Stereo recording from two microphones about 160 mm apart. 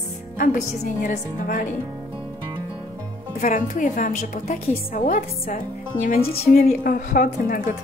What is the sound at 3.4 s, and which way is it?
A woman's voice, 50° left (ahead or behind).